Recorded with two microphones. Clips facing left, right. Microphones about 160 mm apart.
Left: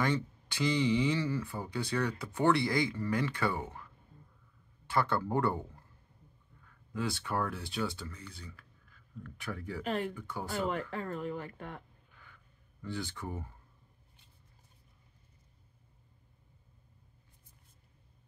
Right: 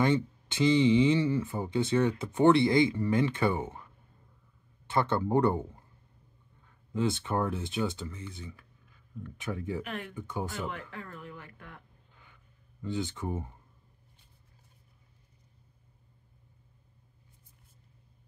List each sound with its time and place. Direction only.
0.0 s speech: 20° right (ahead or behind)
9.8 s speech: 35° left (ahead or behind)
10.1 s speech: 20° right (ahead or behind)
10.5 s speech: 40° left (ahead or behind)
12.8 s speech: 20° right (ahead or behind)